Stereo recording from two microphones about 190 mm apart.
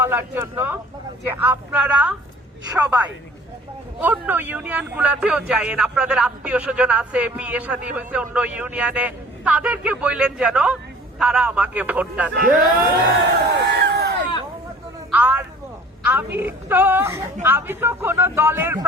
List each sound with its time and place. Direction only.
0.0 s speech: 10° right (ahead or behind)
12.4 s speech: 50° right (ahead or behind)
15.1 s a sound: 10° right (ahead or behind)
16.4 s speech: 10° right (ahead or behind)